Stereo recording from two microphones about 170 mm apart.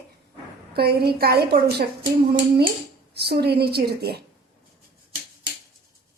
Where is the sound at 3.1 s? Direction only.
70° right (ahead or behind).